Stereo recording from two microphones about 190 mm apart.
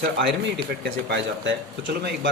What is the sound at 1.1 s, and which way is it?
Speech, 70° right (ahead or behind).